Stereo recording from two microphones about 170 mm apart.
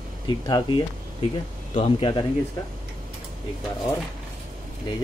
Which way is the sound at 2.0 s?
30° left (ahead or behind).